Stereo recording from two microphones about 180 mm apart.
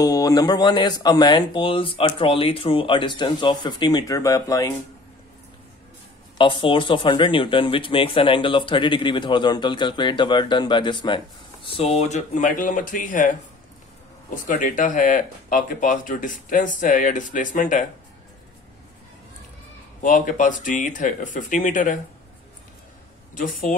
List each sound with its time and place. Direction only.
0.0 s speech: 20° left (ahead or behind)
6.3 s speech: 25° left (ahead or behind); by 13.3 s 45° left (ahead or behind)
14.3 s speech: 45° left (ahead or behind)
20.0 s speech: 45° left (ahead or behind)
23.3 s speech: 50° left (ahead or behind)